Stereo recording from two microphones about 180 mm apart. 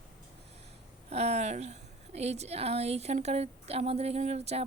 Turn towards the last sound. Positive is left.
turn(degrees=-35)  # may be behind; listen again after turning